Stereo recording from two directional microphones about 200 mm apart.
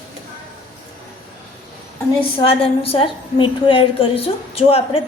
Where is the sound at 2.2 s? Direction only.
25° left (ahead or behind).